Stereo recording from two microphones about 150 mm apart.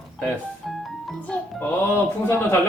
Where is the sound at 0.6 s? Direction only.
Centre (ahead or behind); by 2.6 s 15° left (ahead or behind).